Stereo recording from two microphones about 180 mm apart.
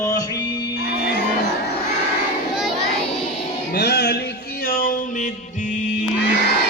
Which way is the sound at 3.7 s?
65° left (ahead or behind).